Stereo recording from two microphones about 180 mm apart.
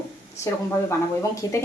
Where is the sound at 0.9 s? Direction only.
15° left (ahead or behind).